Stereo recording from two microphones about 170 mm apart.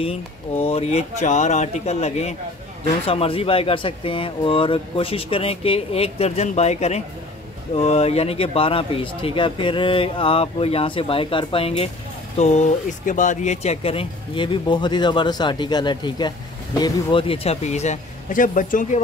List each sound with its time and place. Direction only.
0.0 s speech: 35° left (ahead or behind); by 18.9 s 50° left (ahead or behind)